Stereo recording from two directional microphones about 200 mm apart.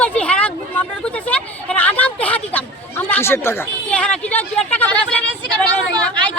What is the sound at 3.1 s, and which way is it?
Speech, 10° left (ahead or behind).